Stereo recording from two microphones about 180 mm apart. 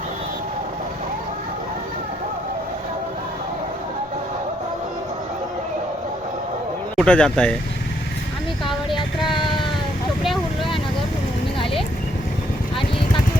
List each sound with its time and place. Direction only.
6.9 s speech: 5° left (ahead or behind)
9.0 s music: 25° left (ahead or behind)